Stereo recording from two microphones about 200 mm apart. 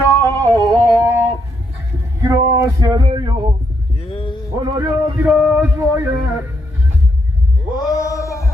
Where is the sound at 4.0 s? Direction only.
25° left (ahead or behind).